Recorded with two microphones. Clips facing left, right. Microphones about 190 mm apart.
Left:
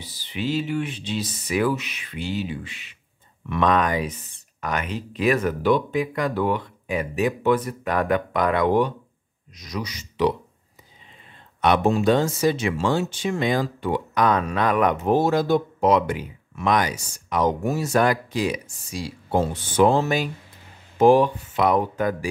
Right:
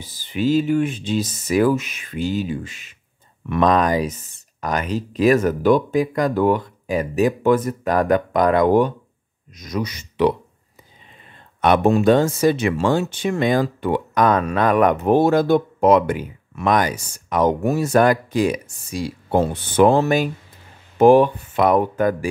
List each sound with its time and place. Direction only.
0.0 s speech: 45° right (ahead or behind)
11.6 s speech: 55° right (ahead or behind)